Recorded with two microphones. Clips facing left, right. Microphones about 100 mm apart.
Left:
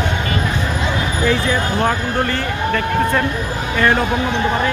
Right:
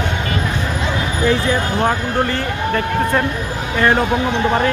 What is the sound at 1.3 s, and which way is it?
Speech, 25° right (ahead or behind).